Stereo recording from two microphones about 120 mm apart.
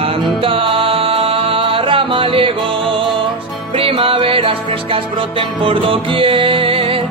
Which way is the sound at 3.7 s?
50° right (ahead or behind).